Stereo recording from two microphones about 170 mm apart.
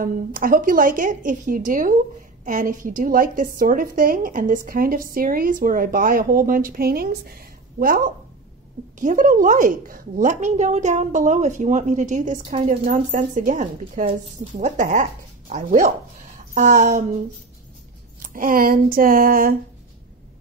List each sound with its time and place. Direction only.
0.0 s a woman's voice: 55° right (ahead or behind)
9.0 s a woman's voice: 50° right (ahead or behind)
18.2 s speech: 55° right (ahead or behind)